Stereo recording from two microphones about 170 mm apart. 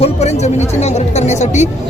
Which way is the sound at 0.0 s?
40° left (ahead or behind).